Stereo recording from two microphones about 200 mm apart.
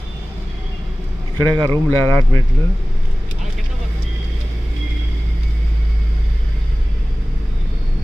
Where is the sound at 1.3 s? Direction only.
20° right (ahead or behind).